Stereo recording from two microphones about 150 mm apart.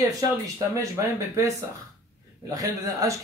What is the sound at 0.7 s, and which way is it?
Speech, 20° right (ahead or behind).